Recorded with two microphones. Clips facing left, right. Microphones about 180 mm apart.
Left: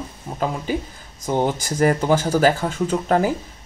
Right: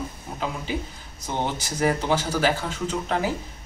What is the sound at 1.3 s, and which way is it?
Speech, 45° left (ahead or behind).